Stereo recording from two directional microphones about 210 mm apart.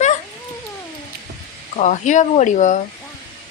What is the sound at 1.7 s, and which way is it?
A woman's voice, 35° left (ahead or behind).